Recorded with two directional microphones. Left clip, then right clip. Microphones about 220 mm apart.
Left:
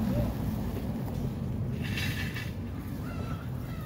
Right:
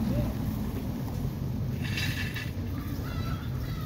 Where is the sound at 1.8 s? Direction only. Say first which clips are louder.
Right 2 dB; 50° right (ahead or behind).